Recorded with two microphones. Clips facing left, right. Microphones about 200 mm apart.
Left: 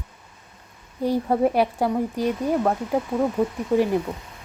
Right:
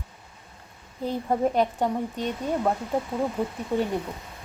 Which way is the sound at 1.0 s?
10° left (ahead or behind).